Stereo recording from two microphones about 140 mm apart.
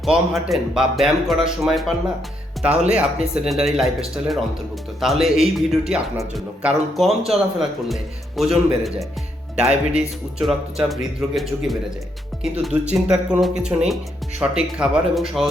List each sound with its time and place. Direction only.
0.0 s speech: centre (ahead or behind)
2.7 s speech: 50° right (ahead or behind)
3.3 s speech: 5° right (ahead or behind)
12.9 s speech: 5° right (ahead or behind)